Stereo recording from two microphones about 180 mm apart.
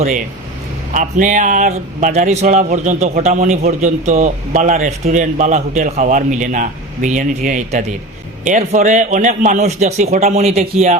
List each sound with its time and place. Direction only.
0.9 s speech: 45° right (ahead or behind)